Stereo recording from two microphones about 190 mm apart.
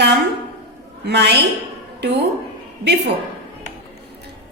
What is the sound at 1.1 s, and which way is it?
Speech, 65° right (ahead or behind).